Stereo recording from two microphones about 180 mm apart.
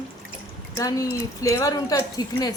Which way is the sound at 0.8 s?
20° left (ahead or behind).